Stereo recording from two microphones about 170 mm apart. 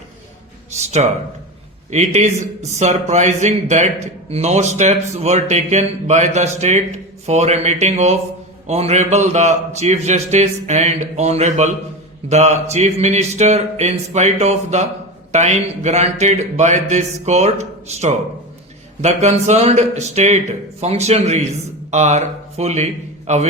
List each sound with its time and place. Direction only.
0.8 s a man's voice: 40° right (ahead or behind)